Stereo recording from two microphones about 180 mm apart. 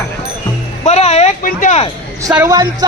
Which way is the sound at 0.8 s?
35° left (ahead or behind).